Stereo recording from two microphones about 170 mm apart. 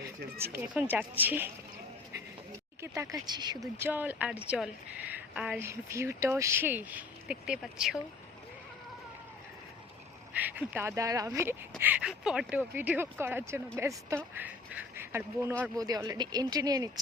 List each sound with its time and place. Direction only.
0.3 s speech: 15° right (ahead or behind)
2.1 s a sound: 20° right (ahead or behind)
3.8 s a woman's voice: 10° right (ahead or behind)
10.3 s speech: 10° right (ahead or behind)
12.0 s speech: 5° right (ahead or behind); by 16.9 s 20° right (ahead or behind)